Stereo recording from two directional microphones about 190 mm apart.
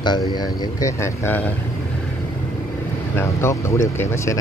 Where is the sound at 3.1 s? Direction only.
15° left (ahead or behind).